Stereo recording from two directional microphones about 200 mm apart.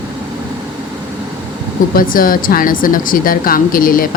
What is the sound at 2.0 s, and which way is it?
Speech, 45° left (ahead or behind).